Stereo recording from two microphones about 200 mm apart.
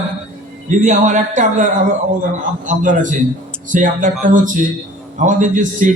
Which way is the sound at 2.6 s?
40° right (ahead or behind).